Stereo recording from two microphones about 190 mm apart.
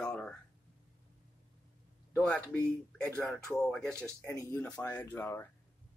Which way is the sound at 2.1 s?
5° left (ahead or behind).